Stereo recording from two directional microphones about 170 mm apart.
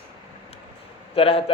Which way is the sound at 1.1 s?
35° left (ahead or behind).